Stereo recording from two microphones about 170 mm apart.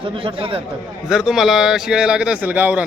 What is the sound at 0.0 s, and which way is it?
Speech, 30° right (ahead or behind).